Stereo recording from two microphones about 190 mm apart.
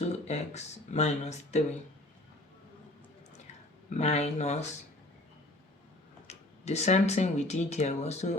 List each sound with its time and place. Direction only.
0.0 s speech: 35° left (ahead or behind)
3.8 s speech: 35° left (ahead or behind)
6.2 s speech: 35° left (ahead or behind)